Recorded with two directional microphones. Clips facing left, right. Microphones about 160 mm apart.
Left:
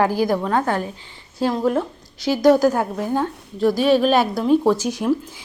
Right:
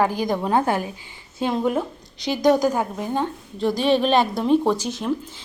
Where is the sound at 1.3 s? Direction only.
Centre (ahead or behind).